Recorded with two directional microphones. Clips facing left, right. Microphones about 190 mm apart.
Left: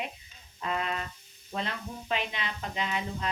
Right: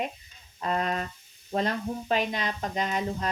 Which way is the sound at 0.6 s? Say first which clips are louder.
Right 4 dB; 40° right (ahead or behind).